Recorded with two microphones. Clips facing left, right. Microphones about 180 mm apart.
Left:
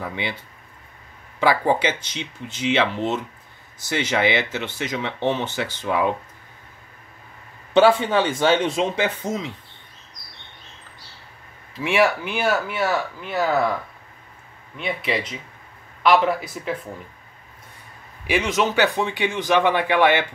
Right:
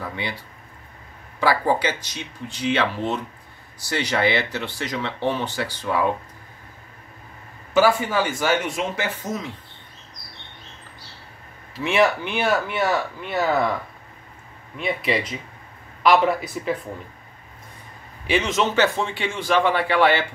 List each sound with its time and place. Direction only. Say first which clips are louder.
0.0 s speech: left 1 dB; 20° left (ahead or behind)
1.4 s speech: left 1 dB; 20° left (ahead or behind)
7.7 s speech: left 3 dB; 25° left (ahead or behind)
11.8 s speech: even; 10° left (ahead or behind)
14.8 s speech: right 2 dB; centre (ahead or behind)
18.3 s a man's voice: even; 10° left (ahead or behind)